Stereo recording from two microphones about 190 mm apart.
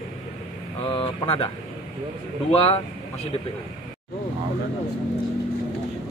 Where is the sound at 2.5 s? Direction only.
30° left (ahead or behind).